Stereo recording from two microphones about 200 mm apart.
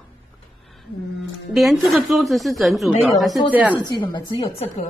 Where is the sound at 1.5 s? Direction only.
Centre (ahead or behind).